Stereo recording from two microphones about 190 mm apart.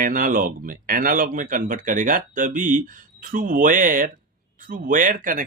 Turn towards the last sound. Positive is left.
turn(degrees=-45)  # may be behind; listen again after turning